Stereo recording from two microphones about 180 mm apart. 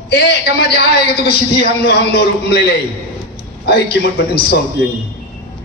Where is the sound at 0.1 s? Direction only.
65° left (ahead or behind).